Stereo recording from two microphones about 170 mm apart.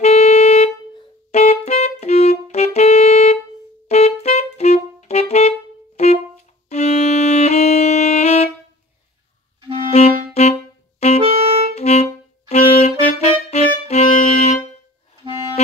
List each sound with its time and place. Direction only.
0.0 s music: 40° left (ahead or behind)
9.9 s clarinet: 40° left (ahead or behind)
11.1 s music: 35° right (ahead or behind)
11.7 s music: 40° left (ahead or behind)